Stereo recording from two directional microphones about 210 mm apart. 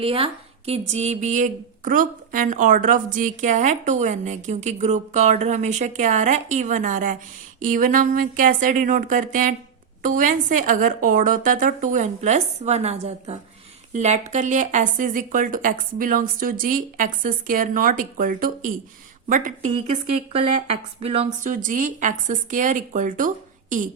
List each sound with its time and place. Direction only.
0.0 s speech: 25° right (ahead or behind)